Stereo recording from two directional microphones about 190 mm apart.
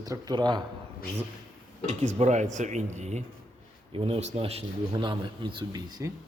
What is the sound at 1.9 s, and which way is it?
A man's voice, 35° right (ahead or behind).